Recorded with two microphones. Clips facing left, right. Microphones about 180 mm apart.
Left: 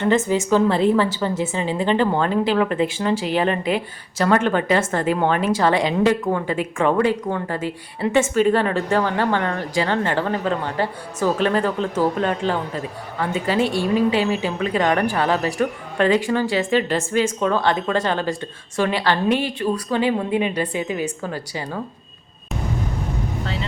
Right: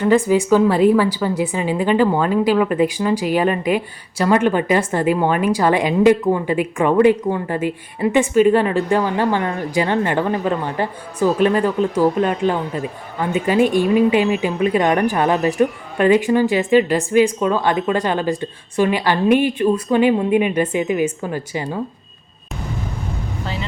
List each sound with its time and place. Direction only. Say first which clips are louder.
0.3 s a woman's voice: right 3 dB; 10° right (ahead or behind)